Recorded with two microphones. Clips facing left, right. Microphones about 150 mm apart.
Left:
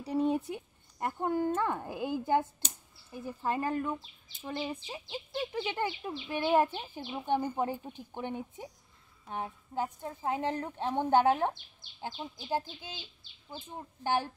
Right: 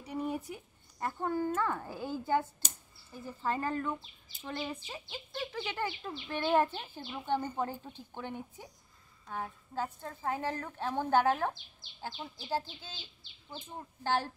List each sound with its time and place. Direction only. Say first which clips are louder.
0.0 s a woman's voice: left 7 dB; 30° left (ahead or behind)
14.0 s speech: left 1 dB; 15° left (ahead or behind)